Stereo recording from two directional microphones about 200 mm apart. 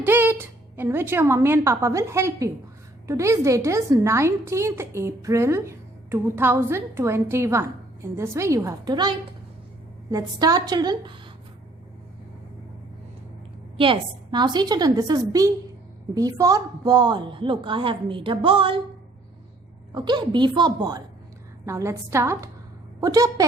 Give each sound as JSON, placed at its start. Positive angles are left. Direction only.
{"t": 0.0, "sound": "a woman's voice", "side_deg": -10}
{"t": 13.7, "sound": "a woman's voice", "side_deg": -25}
{"t": 19.9, "sound": "a woman's voice", "side_deg": -20}